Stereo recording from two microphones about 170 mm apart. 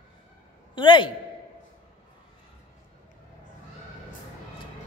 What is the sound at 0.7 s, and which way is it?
Speech, 30° left (ahead or behind).